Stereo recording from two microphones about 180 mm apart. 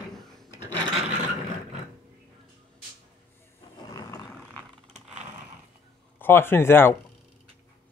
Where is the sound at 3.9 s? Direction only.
20° left (ahead or behind).